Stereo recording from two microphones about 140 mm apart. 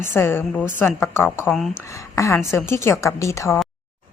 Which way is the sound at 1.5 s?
Centre (ahead or behind).